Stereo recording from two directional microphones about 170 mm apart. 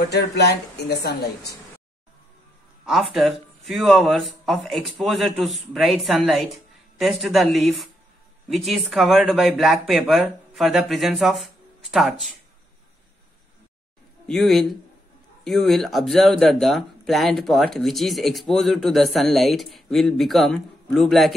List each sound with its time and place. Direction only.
0.1 s speech: 75° left (ahead or behind)
2.8 s speech: centre (ahead or behind)
14.2 s speech: centre (ahead or behind)